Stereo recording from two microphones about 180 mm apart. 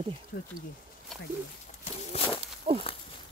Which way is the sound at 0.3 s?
60° left (ahead or behind).